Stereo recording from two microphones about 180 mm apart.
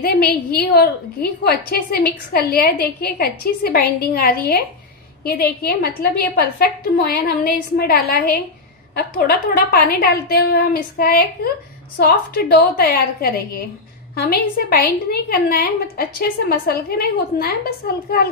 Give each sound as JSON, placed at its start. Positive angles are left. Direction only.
{"t": 0.0, "sound": "a woman's voice", "side_deg": 60}